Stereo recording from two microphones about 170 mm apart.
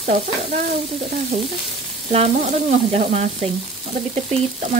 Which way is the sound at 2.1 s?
40° right (ahead or behind).